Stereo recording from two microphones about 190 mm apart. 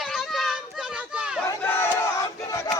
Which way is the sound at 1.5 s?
10° left (ahead or behind).